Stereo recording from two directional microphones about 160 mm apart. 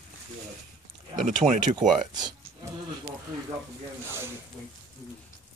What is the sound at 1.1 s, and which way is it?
Speech, 50° right (ahead or behind).